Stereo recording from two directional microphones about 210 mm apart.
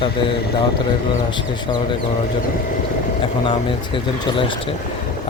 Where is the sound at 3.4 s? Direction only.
25° left (ahead or behind).